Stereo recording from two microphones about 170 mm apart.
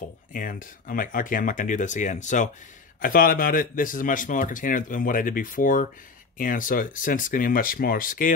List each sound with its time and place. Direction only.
0.3 s speech: 55° left (ahead or behind)
3.0 s speech: 55° left (ahead or behind)